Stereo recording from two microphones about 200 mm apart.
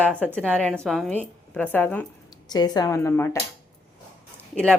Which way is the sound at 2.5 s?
20° left (ahead or behind).